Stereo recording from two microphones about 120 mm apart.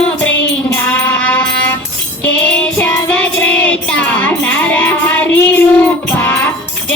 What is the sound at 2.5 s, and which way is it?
Music, 15° left (ahead or behind).